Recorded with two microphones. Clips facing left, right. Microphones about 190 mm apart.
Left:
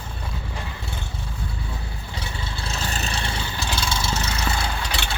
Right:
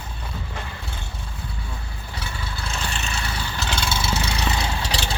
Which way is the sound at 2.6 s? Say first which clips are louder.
Left 1 dB; 35° left (ahead or behind).